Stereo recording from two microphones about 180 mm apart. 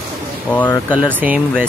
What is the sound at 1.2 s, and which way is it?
Speech, 10° right (ahead or behind).